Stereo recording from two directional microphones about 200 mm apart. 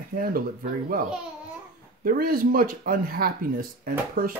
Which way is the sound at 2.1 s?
45° right (ahead or behind).